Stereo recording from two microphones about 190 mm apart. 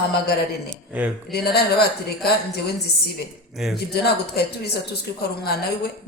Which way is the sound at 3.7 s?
60° left (ahead or behind).